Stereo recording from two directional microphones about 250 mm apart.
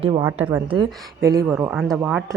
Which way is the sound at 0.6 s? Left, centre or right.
Centre.